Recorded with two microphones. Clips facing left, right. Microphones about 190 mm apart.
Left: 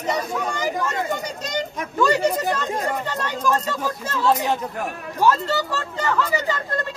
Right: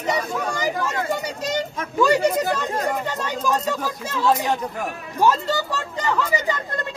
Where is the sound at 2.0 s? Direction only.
10° right (ahead or behind).